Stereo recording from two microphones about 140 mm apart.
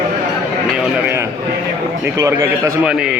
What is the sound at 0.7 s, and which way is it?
Speech, 10° right (ahead or behind).